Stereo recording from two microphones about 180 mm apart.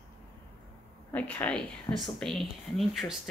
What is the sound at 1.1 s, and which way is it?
Speech, 10° left (ahead or behind).